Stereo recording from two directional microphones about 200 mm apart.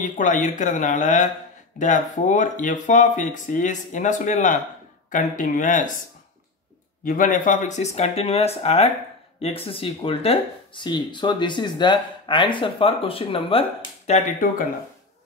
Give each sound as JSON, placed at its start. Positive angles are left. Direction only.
{"t": 0.0, "sound": "speech", "side_deg": 40}
{"t": 7.1, "sound": "speech", "side_deg": 40}